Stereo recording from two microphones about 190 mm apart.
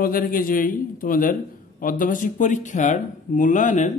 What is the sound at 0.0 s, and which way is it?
Speech, 50° left (ahead or behind).